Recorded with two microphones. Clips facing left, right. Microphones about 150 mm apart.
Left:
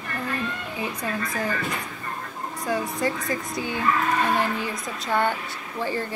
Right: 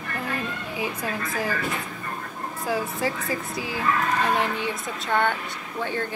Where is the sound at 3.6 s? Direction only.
25° left (ahead or behind).